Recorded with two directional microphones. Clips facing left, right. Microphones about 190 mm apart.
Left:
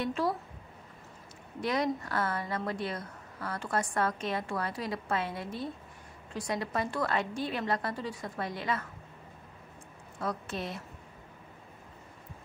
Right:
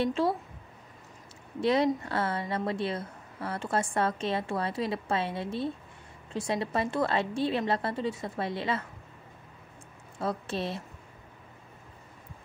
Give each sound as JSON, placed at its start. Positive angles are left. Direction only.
{"t": 0.0, "sound": "a woman's voice", "side_deg": -25}
{"t": 1.6, "sound": "a woman's voice", "side_deg": -25}
{"t": 10.1, "sound": "a woman's voice", "side_deg": -30}